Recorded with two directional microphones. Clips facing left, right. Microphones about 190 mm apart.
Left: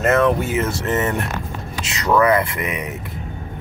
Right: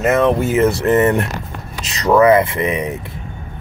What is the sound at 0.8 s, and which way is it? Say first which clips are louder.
Speech: right 8 dB; 55° right (ahead or behind).